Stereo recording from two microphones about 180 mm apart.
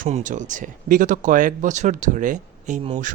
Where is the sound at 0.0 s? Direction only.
45° right (ahead or behind).